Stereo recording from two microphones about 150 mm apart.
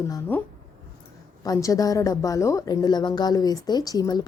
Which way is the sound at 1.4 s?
20° left (ahead or behind).